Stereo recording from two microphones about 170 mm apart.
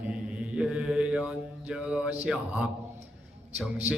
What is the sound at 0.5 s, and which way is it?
Mantra, 5° right (ahead or behind).